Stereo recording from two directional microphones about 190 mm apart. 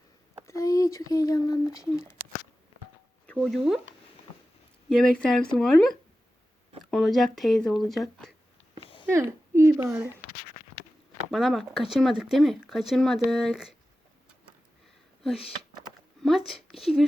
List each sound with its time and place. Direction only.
0.4 s speech: 15° left (ahead or behind)
3.3 s speech: centre (ahead or behind)
4.9 s speech: 5° left (ahead or behind)
8.8 s a sound: 30° left (ahead or behind)
9.0 s a woman's voice: 15° right (ahead or behind)
11.3 s speech: centre (ahead or behind)
16.2 s speech: centre (ahead or behind)